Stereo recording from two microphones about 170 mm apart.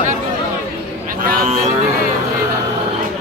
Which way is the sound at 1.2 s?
45° right (ahead or behind).